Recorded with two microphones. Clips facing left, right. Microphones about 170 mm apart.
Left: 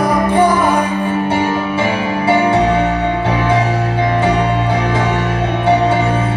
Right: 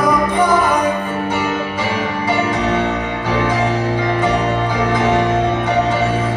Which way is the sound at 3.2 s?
30° left (ahead or behind).